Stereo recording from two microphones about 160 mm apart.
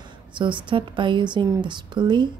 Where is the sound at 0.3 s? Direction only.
30° right (ahead or behind).